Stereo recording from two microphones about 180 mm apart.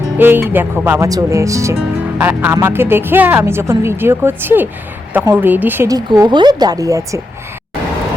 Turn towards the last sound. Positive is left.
turn(degrees=-20)  # may be behind; listen again after turning